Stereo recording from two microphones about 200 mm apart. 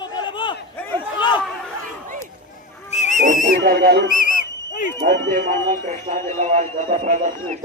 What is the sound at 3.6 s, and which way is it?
Speech, 50° right (ahead or behind).